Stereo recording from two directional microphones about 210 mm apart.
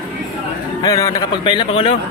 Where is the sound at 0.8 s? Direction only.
15° left (ahead or behind).